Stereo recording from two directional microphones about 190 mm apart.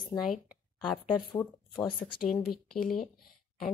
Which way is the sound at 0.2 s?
Centre (ahead or behind).